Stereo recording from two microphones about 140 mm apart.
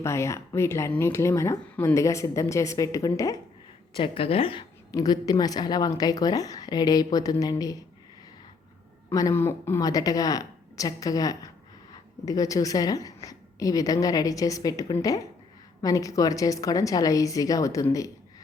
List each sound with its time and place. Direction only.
0.0 s speech: 20° left (ahead or behind)
3.9 s a woman's voice: 40° left (ahead or behind)
4.9 s speech: 25° left (ahead or behind)
9.0 s speech: 20° left (ahead or behind)